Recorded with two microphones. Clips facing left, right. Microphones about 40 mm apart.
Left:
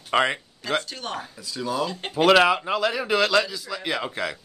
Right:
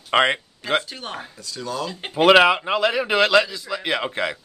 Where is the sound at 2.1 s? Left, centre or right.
Right.